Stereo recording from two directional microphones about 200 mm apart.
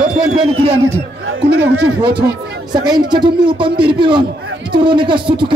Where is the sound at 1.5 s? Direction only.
55° right (ahead or behind).